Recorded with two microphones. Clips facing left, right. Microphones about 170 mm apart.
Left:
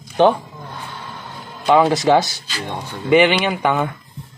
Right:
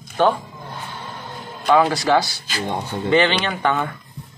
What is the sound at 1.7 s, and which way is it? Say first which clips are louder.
Speech: left 3 dB; 20° left (ahead or behind).